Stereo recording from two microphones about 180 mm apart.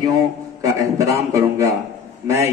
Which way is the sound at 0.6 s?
15° right (ahead or behind).